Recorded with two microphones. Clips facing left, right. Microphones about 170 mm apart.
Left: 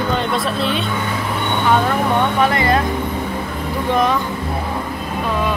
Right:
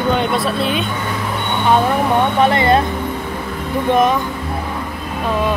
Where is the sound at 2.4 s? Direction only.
25° right (ahead or behind).